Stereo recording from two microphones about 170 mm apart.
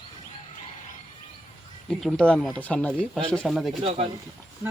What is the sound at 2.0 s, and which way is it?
Speech, 5° left (ahead or behind).